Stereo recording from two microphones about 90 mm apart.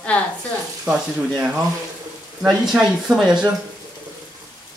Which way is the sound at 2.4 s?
5° right (ahead or behind).